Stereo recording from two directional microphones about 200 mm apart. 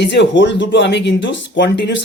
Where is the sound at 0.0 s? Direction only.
60° left (ahead or behind).